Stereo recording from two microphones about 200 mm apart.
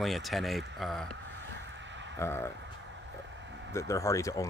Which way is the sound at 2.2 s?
10° left (ahead or behind).